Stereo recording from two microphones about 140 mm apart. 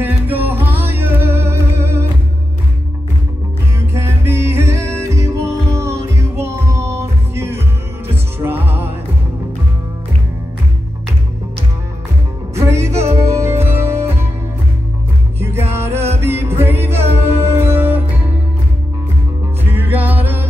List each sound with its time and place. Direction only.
0.0 s music: 15° right (ahead or behind)
3.9 s music: 20° right (ahead or behind)
12.5 s music: 20° right (ahead or behind)
15.4 s music: 15° right (ahead or behind)
19.6 s music: 15° right (ahead or behind)